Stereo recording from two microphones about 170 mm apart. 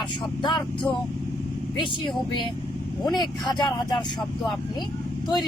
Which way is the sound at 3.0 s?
25° left (ahead or behind).